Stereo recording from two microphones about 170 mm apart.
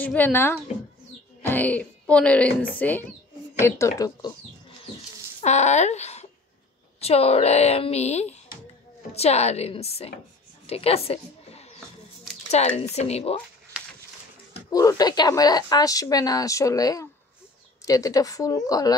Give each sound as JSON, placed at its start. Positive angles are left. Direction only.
{"t": 0.0, "sound": "a child's voice", "side_deg": 10}
{"t": 5.4, "sound": "a woman's voice", "side_deg": 40}
{"t": 10.7, "sound": "a sound", "side_deg": 35}
{"t": 12.4, "sound": "a woman's voice", "side_deg": 40}
{"t": 14.7, "sound": "a woman's voice", "side_deg": 20}